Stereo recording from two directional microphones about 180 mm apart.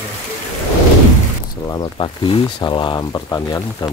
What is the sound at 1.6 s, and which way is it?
Speech, 25° left (ahead or behind).